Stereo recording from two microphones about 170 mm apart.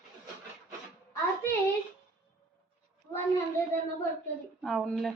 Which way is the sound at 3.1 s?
15° left (ahead or behind).